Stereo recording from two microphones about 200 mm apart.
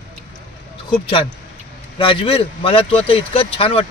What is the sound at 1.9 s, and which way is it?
Speech, 25° left (ahead or behind).